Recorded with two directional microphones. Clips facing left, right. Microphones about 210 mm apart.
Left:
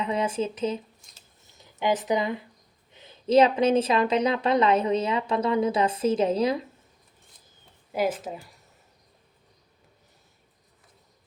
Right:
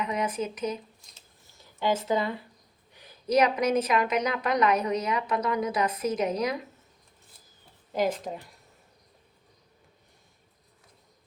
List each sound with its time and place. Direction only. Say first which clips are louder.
0.0 s a woman's voice: left 3 dB; 30° left (ahead or behind)
7.9 s speech: left 1 dB; 5° left (ahead or behind)